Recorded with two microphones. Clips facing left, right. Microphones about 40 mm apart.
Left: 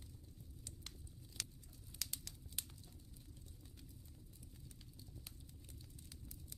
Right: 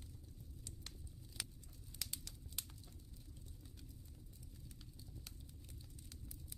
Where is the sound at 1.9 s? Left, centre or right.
Centre.